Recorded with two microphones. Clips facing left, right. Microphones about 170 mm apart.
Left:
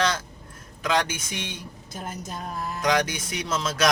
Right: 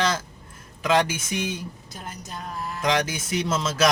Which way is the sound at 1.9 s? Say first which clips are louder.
Left 6 dB; 45° left (ahead or behind).